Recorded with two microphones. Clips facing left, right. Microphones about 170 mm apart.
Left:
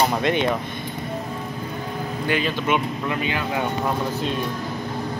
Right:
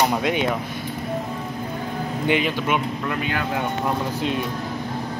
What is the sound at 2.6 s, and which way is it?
Speech, 5° right (ahead or behind).